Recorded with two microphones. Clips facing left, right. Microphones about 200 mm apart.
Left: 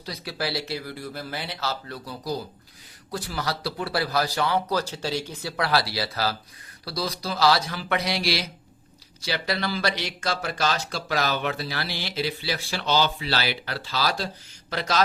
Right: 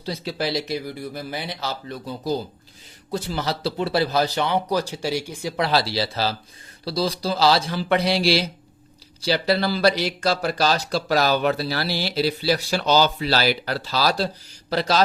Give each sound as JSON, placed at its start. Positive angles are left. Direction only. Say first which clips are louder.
{"t": 0.0, "sound": "speech", "louder": "right 5 dB", "side_deg": -25}